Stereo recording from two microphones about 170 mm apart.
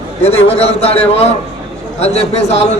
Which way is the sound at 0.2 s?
35° left (ahead or behind).